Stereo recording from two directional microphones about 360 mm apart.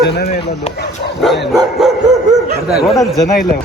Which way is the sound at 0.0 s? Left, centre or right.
Left.